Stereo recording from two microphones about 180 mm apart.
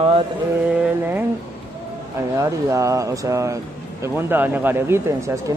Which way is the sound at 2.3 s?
15° right (ahead or behind).